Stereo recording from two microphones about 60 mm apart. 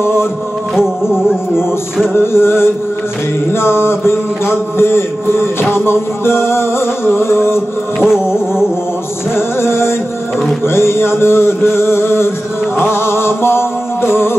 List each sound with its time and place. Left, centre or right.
0.0 s music: left
0.7 s music: centre
2.1 s a sound: left
7.1 s music: left
9.3 s a sound: left
12.7 s music: left